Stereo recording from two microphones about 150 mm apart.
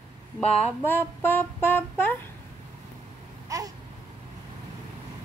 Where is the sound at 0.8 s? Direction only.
15° left (ahead or behind).